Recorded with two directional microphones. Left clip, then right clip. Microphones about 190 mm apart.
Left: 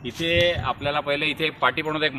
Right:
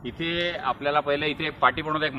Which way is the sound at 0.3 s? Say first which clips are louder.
Left 5 dB; 65° left (ahead or behind).